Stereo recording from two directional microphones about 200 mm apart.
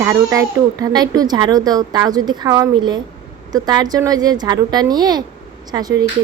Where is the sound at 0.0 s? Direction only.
15° right (ahead or behind).